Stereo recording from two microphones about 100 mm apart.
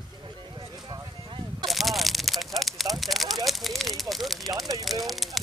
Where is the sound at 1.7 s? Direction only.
Centre (ahead or behind).